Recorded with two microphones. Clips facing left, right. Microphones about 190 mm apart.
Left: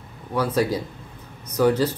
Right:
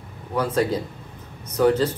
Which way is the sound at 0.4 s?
10° left (ahead or behind).